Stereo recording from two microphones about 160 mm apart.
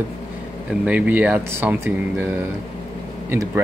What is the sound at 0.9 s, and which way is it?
Speech, 10° right (ahead or behind).